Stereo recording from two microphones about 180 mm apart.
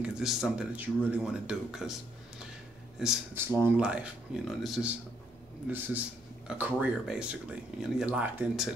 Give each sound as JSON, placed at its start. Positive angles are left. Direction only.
{"t": 0.0, "sound": "speech", "side_deg": -5}